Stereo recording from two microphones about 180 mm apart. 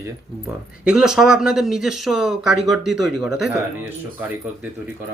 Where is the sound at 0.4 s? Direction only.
5° right (ahead or behind).